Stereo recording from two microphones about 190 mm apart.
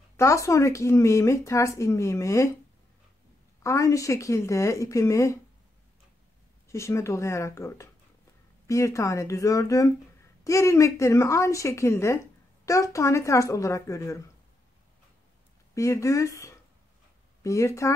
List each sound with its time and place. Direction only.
0.2 s speech: 15° left (ahead or behind)
3.6 s speech: 15° left (ahead or behind)
6.7 s speech: 15° left (ahead or behind)
15.7 s speech: 15° left (ahead or behind)